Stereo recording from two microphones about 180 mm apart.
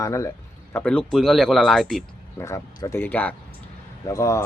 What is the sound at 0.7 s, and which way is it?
Speech, 5° left (ahead or behind).